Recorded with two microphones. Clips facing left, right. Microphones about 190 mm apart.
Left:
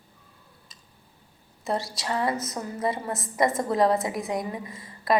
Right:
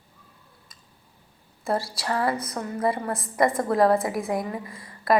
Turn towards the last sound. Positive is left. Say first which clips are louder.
# right 2 dB
turn(degrees=25)  # may be behind; listen again after turning